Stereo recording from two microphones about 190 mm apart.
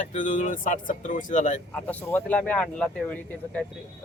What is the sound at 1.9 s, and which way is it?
Speech, 10° left (ahead or behind).